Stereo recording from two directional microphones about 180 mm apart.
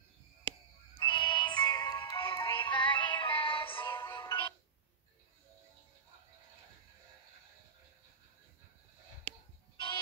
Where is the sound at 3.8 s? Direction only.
15° left (ahead or behind).